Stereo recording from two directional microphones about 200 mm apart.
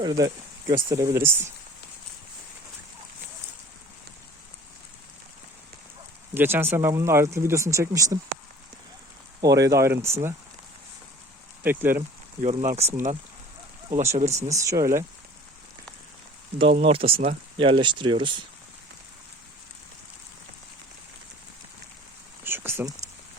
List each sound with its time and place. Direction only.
0.0 s speech: 20° right (ahead or behind)
6.3 s speech: 10° right (ahead or behind)
9.4 s speech: 15° right (ahead or behind)
11.6 s speech: 10° right (ahead or behind)
12.4 s speech: 35° right (ahead or behind)
14.5 s speech: 15° right (ahead or behind)
16.9 s speech: 30° right (ahead or behind)
22.4 s a sound: 10° right (ahead or behind)